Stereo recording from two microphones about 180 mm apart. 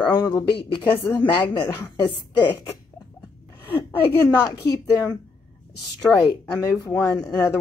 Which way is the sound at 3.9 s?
10° left (ahead or behind).